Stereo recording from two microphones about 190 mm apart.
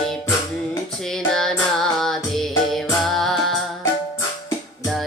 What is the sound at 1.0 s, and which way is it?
Music, centre (ahead or behind).